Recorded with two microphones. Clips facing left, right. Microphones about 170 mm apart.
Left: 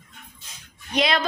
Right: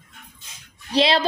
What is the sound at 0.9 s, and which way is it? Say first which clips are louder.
Speech: right 3 dB; 30° right (ahead or behind).